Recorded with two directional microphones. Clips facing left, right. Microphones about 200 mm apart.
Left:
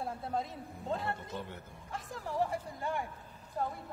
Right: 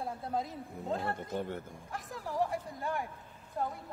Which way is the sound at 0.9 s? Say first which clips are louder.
Right 3 dB; 50° right (ahead or behind).